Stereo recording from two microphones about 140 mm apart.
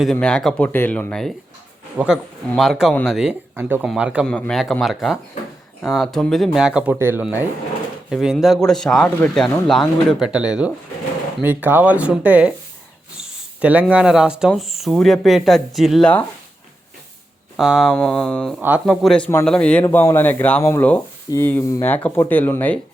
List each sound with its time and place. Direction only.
0.0 s speech: 5° left (ahead or behind)
2.0 s speech: 10° right (ahead or behind)
3.5 s speech: 15° right (ahead or behind)
4.3 s speech: 5° left (ahead or behind); by 12.5 s 10° right (ahead or behind)
13.2 s a sound: 10° right (ahead or behind)
13.9 s speech: 5° right (ahead or behind)
17.6 s speech: centre (ahead or behind)
19.8 s speech: 20° left (ahead or behind)
20.6 s speech: 20° left (ahead or behind)